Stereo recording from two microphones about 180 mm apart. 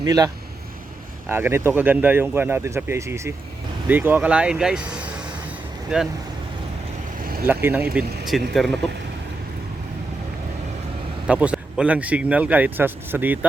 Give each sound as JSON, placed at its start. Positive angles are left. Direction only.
{"t": 0.0, "sound": "speech", "side_deg": -20}
{"t": 1.3, "sound": "speech", "side_deg": -10}
{"t": 7.4, "sound": "speech", "side_deg": -10}
{"t": 11.3, "sound": "speech", "side_deg": -5}